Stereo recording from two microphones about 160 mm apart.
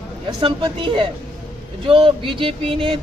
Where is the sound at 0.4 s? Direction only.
30° right (ahead or behind).